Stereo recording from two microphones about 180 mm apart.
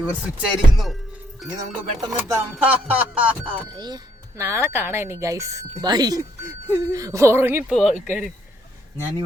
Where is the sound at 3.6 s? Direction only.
25° right (ahead or behind); by 8.3 s 5° right (ahead or behind).